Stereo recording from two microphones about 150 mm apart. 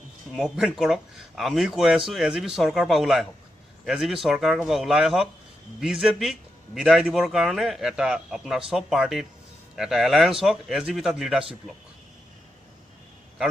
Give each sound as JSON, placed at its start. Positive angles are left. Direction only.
{"t": 0.3, "sound": "a man's voice", "side_deg": 0}